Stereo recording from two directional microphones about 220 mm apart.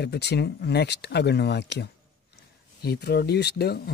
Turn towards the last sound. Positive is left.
turn(degrees=50)  # may be behind; listen again after turning